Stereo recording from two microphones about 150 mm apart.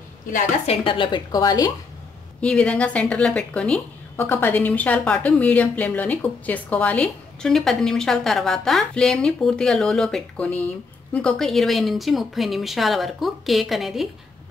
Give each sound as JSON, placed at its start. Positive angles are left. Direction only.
{"t": 0.7, "sound": "a woman's voice", "side_deg": 35}
{"t": 2.4, "sound": "a woman's voice", "side_deg": 5}